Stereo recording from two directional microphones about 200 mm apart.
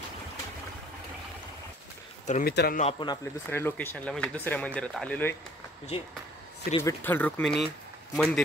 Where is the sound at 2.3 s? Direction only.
40° left (ahead or behind).